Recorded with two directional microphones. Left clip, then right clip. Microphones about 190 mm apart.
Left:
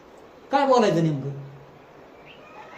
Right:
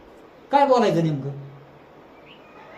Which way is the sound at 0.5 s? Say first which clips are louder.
Right 2 dB; 15° right (ahead or behind).